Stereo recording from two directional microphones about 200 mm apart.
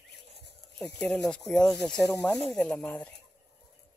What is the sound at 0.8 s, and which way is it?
Speech, 5° left (ahead or behind).